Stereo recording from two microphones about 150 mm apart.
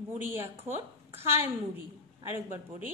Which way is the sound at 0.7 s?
15° right (ahead or behind).